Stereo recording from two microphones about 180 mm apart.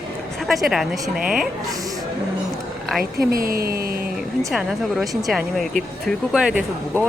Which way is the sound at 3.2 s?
55° right (ahead or behind).